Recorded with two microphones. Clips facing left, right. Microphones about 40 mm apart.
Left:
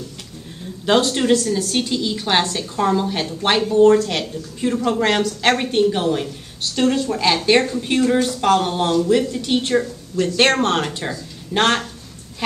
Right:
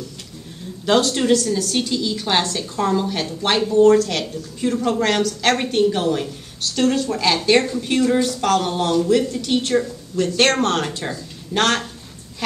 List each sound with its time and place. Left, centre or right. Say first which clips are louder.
0.8 s a woman's voice: left 1 dB; centre